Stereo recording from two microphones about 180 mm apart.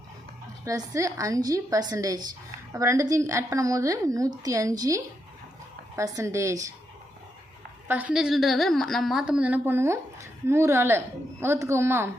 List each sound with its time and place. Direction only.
0.6 s a woman's voice: 15° right (ahead or behind)
7.9 s a woman's voice: 10° right (ahead or behind)